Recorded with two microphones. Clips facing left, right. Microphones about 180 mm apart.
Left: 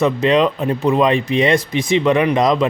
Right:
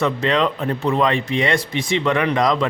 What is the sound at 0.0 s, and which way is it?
Speech, 20° left (ahead or behind).